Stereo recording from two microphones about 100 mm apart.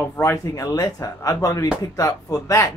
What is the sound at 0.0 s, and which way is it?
A woman's voice, 30° left (ahead or behind).